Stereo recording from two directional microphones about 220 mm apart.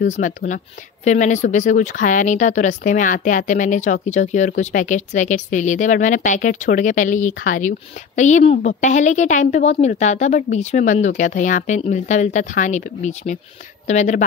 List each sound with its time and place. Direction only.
0.0 s speech: 35° left (ahead or behind)